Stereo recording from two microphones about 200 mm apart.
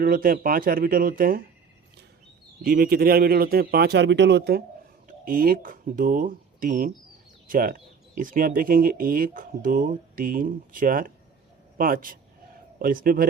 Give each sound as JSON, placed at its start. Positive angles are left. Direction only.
{"t": 0.0, "sound": "speech", "side_deg": -45}
{"t": 2.6, "sound": "speech", "side_deg": -45}
{"t": 5.0, "sound": "speech", "side_deg": -45}